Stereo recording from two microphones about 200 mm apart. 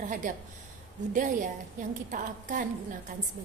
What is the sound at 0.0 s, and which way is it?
A woman's voice, 40° right (ahead or behind).